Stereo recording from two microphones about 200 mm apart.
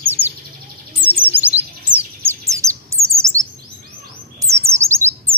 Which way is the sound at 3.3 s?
15° right (ahead or behind).